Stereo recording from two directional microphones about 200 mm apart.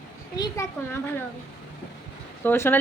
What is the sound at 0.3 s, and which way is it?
Speech, 20° left (ahead or behind).